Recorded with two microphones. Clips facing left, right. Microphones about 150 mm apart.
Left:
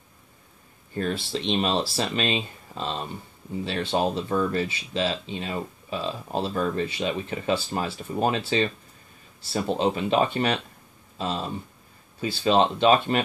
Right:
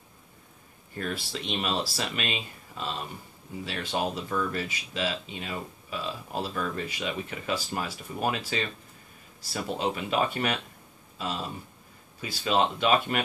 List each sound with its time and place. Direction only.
0.9 s speech: 30° left (ahead or behind)